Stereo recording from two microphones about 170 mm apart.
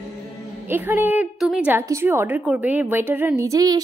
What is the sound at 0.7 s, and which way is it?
A woman's voice, 10° right (ahead or behind).